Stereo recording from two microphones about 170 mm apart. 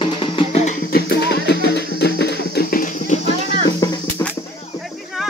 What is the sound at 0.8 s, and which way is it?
Music, 70° left (ahead or behind).